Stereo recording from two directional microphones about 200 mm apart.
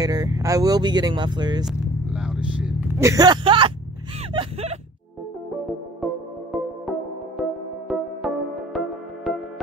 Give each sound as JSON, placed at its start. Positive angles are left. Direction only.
{"t": 0.0, "sound": "speech", "side_deg": -20}
{"t": 1.7, "sound": "vehicle", "side_deg": -5}
{"t": 3.0, "sound": "vehicle", "side_deg": -15}
{"t": 4.3, "sound": "a sound", "side_deg": -30}
{"t": 6.5, "sound": "music", "side_deg": 0}